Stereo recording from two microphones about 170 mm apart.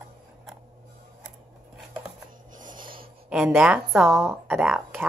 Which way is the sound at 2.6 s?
50° right (ahead or behind).